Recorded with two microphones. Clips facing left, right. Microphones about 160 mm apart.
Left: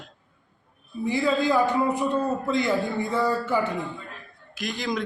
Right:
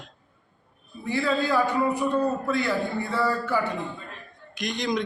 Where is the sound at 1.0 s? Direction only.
15° left (ahead or behind).